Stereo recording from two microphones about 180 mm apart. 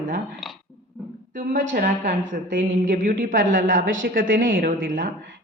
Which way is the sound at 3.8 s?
90° right.